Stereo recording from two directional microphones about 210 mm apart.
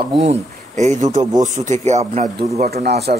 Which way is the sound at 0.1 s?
30° right (ahead or behind).